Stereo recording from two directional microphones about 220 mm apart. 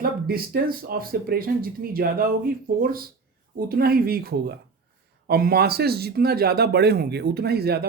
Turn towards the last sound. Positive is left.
turn(degrees=-45)  # may be behind; listen again after turning